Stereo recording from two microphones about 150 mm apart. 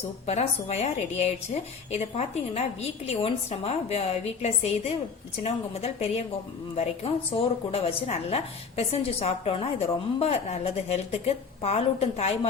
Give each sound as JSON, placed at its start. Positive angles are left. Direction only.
{"t": 0.3, "sound": "a woman's voice", "side_deg": 45}